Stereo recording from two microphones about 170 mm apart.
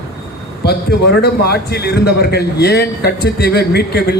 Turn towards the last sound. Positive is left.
turn(degrees=70)  # may be behind; listen again after turning